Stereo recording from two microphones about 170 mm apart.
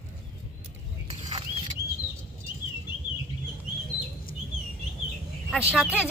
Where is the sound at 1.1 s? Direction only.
30° right (ahead or behind).